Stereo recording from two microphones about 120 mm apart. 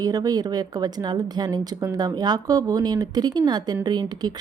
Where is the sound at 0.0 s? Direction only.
30° right (ahead or behind).